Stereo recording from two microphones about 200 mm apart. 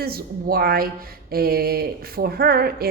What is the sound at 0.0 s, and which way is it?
Speech, 50° right (ahead or behind).